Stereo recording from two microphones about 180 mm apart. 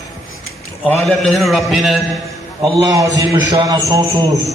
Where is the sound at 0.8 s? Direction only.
5° left (ahead or behind).